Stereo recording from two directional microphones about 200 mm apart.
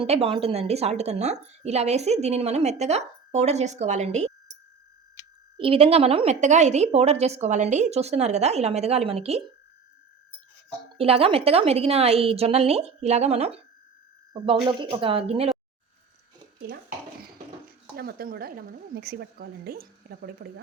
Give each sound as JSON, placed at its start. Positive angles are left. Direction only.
{"t": 0.0, "sound": "a woman's voice", "side_deg": -30}
{"t": 5.5, "sound": "a woman's voice", "side_deg": -25}
{"t": 10.9, "sound": "a woman's voice", "side_deg": -30}
{"t": 17.9, "sound": "a woman's voice", "side_deg": -50}